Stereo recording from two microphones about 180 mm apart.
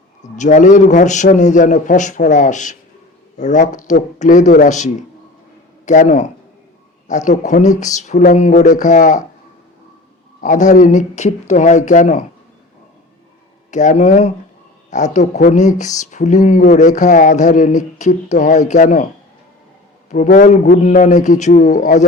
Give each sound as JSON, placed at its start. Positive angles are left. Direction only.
{"t": 0.2, "sound": "a man's voice", "side_deg": 45}
{"t": 10.4, "sound": "speech", "side_deg": 45}
{"t": 13.7, "sound": "speech", "side_deg": 40}
{"t": 20.1, "sound": "speech", "side_deg": 45}